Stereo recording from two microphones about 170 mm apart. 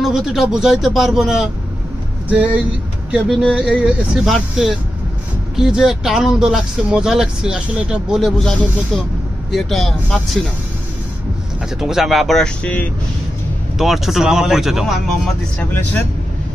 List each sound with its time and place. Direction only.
0.0 s speech: centre (ahead or behind)
11.8 s speech: centre (ahead or behind)